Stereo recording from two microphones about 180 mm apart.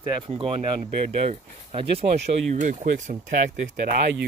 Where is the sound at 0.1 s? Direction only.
30° right (ahead or behind).